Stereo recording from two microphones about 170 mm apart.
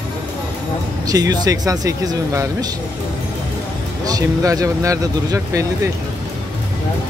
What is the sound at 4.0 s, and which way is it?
Speech, 20° right (ahead or behind).